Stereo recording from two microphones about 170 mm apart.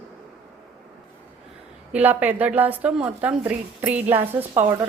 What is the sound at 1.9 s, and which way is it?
A woman's voice, 10° right (ahead or behind).